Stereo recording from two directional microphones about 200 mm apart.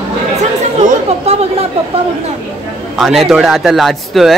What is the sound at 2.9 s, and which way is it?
A man's voice, centre (ahead or behind).